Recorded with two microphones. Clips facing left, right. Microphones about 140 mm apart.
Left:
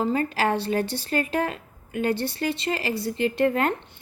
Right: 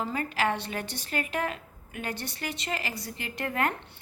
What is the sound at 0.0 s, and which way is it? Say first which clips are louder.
A woman's voice: left 5 dB; 35° left (ahead or behind).